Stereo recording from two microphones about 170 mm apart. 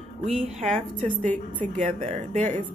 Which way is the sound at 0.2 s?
35° right (ahead or behind).